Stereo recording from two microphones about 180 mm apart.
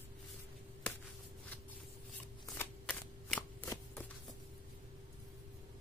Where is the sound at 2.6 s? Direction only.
5° left (ahead or behind).